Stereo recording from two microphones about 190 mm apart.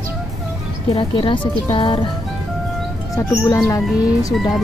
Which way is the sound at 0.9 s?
25° left (ahead or behind).